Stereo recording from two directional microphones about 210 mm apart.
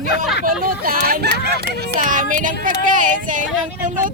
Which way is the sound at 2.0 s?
40° right (ahead or behind).